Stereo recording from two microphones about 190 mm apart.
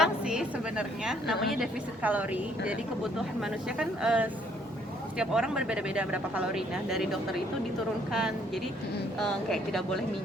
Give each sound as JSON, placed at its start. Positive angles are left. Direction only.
{"t": 0.0, "sound": "a woman's voice", "side_deg": -5}
{"t": 9.1, "sound": "speech", "side_deg": 5}